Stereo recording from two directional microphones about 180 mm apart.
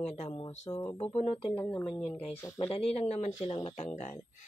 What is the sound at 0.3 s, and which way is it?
Speech, 25° left (ahead or behind).